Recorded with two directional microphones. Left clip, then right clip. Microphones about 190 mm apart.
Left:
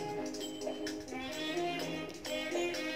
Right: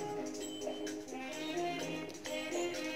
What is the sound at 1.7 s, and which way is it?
Music, 20° left (ahead or behind).